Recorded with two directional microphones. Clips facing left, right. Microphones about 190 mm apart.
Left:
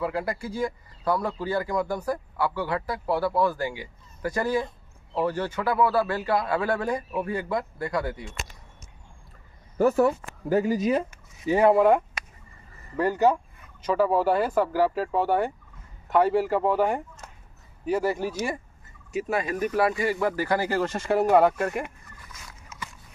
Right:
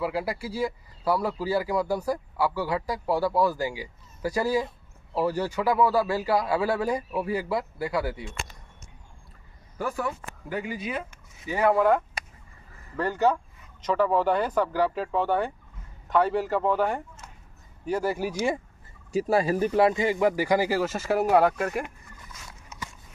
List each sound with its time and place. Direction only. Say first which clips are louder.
0.0 s speech: even; 10° right (ahead or behind)
9.8 s speech: left 10 dB; 40° left (ahead or behind)
11.4 s speech: left 3 dB; 25° left (ahead or behind)
12.9 s speech: left 2 dB; 10° left (ahead or behind)
17.8 s speech: left 2 dB; centre (ahead or behind)
18.2 s speech: right 2 dB; 10° right (ahead or behind)
19.1 s speech: right 4 dB; 30° right (ahead or behind); by 21.8 s centre (ahead or behind)